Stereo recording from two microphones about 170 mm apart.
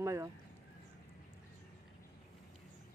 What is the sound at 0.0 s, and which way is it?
Speech, 15° right (ahead or behind).